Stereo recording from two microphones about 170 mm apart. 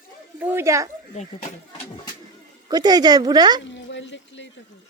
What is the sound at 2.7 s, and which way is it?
Speech, 25° right (ahead or behind).